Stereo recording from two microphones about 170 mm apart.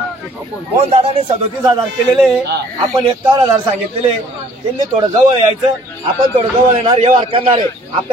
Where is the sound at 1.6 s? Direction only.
25° right (ahead or behind).